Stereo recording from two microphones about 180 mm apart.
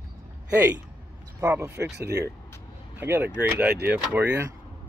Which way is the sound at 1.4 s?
15° right (ahead or behind).